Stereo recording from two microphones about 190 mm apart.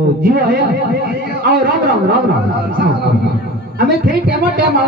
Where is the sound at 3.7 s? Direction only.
50° right (ahead or behind).